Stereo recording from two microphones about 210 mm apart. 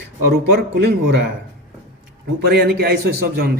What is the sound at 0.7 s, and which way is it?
Speech, 50° right (ahead or behind).